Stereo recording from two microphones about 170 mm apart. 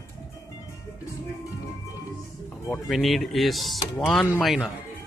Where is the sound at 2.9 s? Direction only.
Centre (ahead or behind).